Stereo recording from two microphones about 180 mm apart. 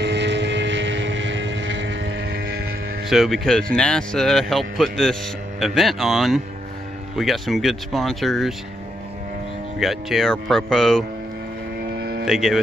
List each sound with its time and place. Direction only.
0.0 s vehicle: 75° right (ahead or behind)
3.1 s speech: centre (ahead or behind)
9.8 s speech: centre (ahead or behind)
11.9 s hum: 60° right (ahead or behind)
12.3 s speech: centre (ahead or behind)